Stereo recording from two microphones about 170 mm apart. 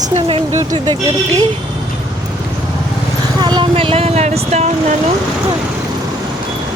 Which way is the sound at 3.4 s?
25° right (ahead or behind).